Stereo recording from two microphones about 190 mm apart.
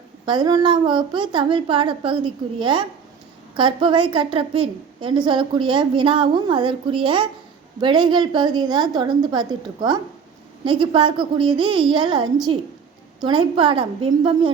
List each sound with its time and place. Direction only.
0.3 s a woman's voice: 20° right (ahead or behind)